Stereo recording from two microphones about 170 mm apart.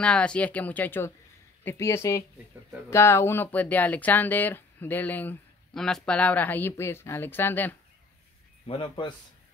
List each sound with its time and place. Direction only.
0.0 s speech: 5° left (ahead or behind)
8.6 s a man's voice: 30° left (ahead or behind)